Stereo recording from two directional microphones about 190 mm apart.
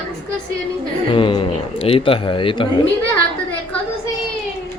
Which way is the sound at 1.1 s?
25° left (ahead or behind).